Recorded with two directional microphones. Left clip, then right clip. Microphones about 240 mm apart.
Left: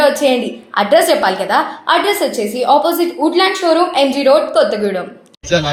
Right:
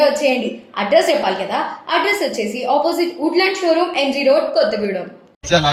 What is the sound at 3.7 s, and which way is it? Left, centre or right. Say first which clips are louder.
Speech: left 3 dB; centre.